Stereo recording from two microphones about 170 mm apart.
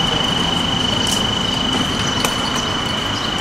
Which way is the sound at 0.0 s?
Centre (ahead or behind).